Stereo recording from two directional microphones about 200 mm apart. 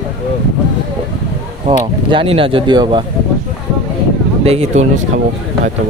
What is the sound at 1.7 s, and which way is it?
Speech, 25° right (ahead or behind).